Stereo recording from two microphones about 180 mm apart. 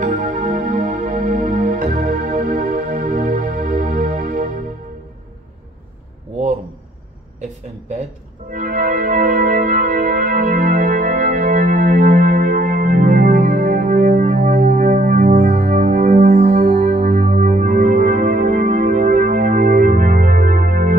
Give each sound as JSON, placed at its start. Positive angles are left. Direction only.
{"t": 0.0, "sound": "music", "side_deg": -45}
{"t": 8.5, "sound": "organ", "side_deg": -50}
{"t": 14.0, "sound": "music", "side_deg": -55}
{"t": 17.6, "sound": "music", "side_deg": -50}